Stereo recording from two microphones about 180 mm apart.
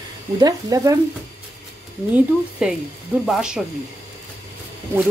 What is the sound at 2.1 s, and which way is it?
Speech, 5° right (ahead or behind).